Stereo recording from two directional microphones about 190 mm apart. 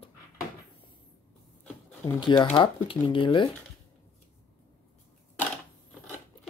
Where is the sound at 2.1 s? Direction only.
25° left (ahead or behind).